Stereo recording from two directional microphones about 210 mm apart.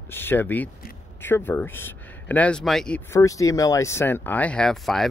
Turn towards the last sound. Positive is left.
turn(degrees=0)  # may be behind; listen again after turning